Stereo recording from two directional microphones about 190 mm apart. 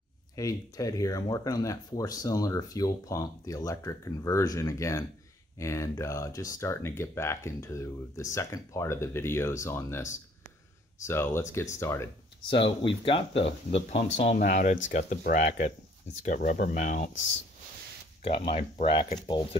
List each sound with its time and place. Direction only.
0.4 s speech: 15° left (ahead or behind)
12.4 s speech: 25° left (ahead or behind); by 17.1 s 45° left (ahead or behind)
18.2 s speech: 25° left (ahead or behind)